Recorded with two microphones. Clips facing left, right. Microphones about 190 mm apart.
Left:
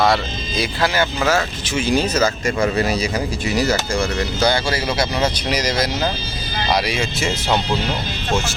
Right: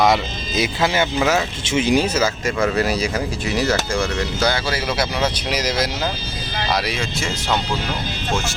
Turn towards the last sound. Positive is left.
turn(degrees=20)  # may be behind; listen again after turning